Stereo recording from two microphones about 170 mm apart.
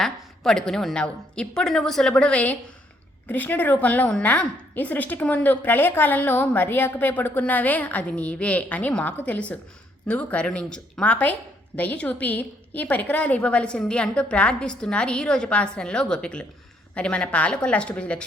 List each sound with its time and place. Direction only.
0.0 s a woman's voice: 5° left (ahead or behind)